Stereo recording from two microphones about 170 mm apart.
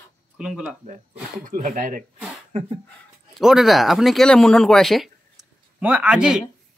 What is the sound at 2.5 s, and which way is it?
Speech, 40° right (ahead or behind).